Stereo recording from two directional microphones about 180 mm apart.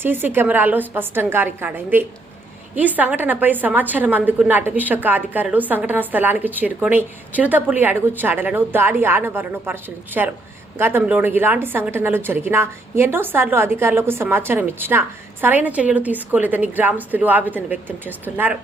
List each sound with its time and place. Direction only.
0.0 s a woman's voice: 10° right (ahead or behind)